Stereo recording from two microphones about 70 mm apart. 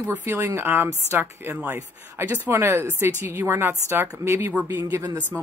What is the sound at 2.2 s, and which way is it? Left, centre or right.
Speech, right.